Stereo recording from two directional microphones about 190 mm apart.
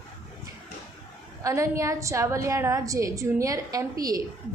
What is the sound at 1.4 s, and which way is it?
A woman's voice, 15° right (ahead or behind).